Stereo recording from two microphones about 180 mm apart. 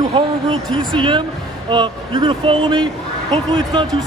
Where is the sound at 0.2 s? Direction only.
30° right (ahead or behind).